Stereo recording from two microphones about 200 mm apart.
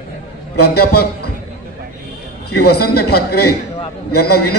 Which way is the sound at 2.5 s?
50° left (ahead or behind).